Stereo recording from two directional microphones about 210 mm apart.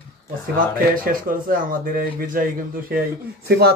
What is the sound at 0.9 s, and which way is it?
Speech, 40° right (ahead or behind).